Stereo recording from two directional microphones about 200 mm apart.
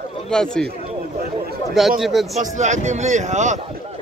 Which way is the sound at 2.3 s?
35° right (ahead or behind).